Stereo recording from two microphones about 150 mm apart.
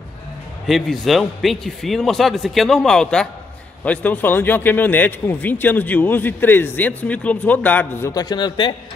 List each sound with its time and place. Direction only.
0.7 s a man's voice: centre (ahead or behind)
8.1 s a man's voice: 25° left (ahead or behind)